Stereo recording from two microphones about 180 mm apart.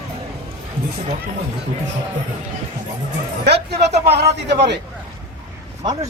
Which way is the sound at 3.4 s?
65° right (ahead or behind).